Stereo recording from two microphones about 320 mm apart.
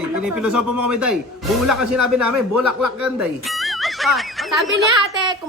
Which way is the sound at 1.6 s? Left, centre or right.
Centre.